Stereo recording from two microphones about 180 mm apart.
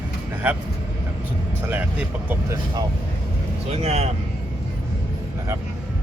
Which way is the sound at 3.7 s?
35° right (ahead or behind).